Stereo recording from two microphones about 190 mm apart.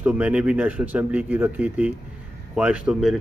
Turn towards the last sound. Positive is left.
turn(degrees=0)  # may be behind; listen again after turning